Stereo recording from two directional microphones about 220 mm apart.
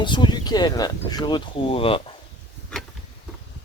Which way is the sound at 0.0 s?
20° left (ahead or behind).